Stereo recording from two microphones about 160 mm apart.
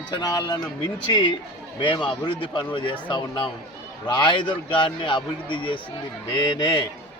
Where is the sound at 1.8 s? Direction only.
30° left (ahead or behind).